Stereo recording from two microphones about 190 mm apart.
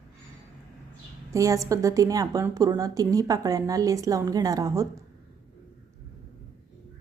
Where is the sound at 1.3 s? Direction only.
15° right (ahead or behind).